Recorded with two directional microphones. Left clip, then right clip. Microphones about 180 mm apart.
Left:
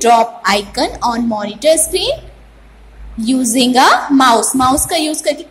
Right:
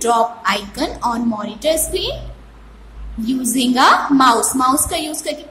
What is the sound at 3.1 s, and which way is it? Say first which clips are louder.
A woman's voice: left 6 dB; 15° left (ahead or behind).